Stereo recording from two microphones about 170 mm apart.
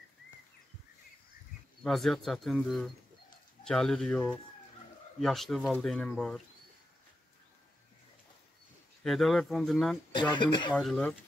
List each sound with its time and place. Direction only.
1.8 s speech: centre (ahead or behind)
9.0 s speech: centre (ahead or behind)
10.3 s speech: 25° left (ahead or behind)
10.7 s speech: centre (ahead or behind)